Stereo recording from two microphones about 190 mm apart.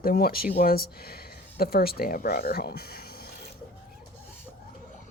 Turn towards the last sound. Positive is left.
turn(degrees=55)  # may be behind; listen again after turning